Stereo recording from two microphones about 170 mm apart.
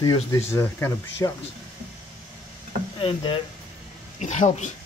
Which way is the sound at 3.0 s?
30° left (ahead or behind).